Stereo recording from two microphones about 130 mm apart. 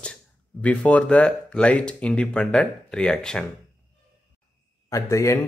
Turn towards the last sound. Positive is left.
turn(degrees=25)  # may be behind; listen again after turning